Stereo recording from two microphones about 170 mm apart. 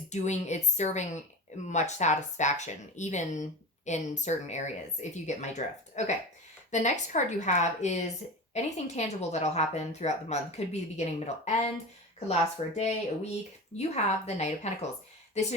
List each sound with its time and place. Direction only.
0.1 s a woman's voice: 45° left (ahead or behind)